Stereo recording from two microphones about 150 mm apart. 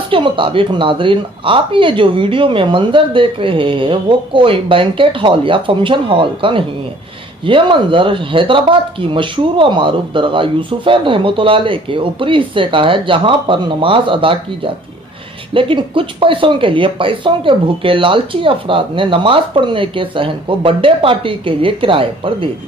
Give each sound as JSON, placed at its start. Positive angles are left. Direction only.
{"t": 0.1, "sound": "speech", "side_deg": -35}